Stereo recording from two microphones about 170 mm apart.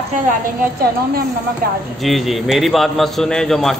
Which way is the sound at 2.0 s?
Centre (ahead or behind).